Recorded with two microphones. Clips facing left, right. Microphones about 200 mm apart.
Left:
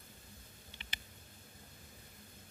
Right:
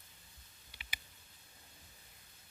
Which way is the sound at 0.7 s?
10° right (ahead or behind).